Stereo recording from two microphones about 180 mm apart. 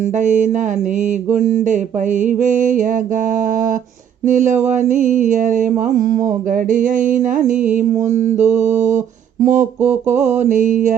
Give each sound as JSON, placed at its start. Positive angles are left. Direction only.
{"t": 0.2, "sound": "mantra", "side_deg": -45}